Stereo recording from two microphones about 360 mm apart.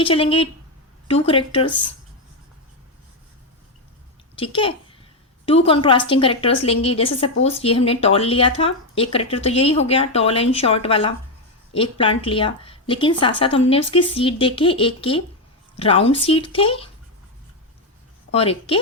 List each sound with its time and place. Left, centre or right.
0.0 s speech: centre
4.4 s a child's voice: centre
18.3 s a woman's voice: centre